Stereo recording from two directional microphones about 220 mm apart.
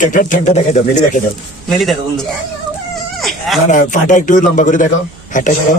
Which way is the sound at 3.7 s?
35° left (ahead or behind).